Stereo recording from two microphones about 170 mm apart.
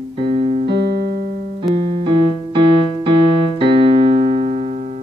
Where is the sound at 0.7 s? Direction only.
80° right; by 1.6 s 60° right (ahead or behind).